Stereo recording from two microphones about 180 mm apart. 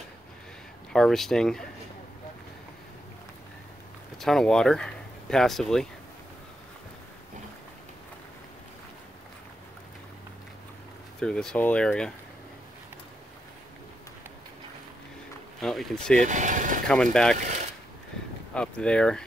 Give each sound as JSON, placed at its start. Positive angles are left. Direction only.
{"t": 0.9, "sound": "speech", "side_deg": 0}
{"t": 4.2, "sound": "speech", "side_deg": 0}
{"t": 11.1, "sound": "speech", "side_deg": 5}
{"t": 15.6, "sound": "speech", "side_deg": 0}
{"t": 16.2, "sound": "speech", "side_deg": -45}
{"t": 16.8, "sound": "speech", "side_deg": 5}
{"t": 17.4, "sound": "speech", "side_deg": -40}
{"t": 18.5, "sound": "speech", "side_deg": 5}